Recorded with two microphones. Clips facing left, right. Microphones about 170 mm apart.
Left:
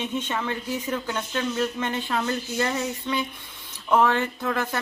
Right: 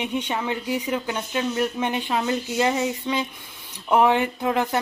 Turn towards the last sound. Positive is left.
turn(degrees=-20)  # may be behind; listen again after turning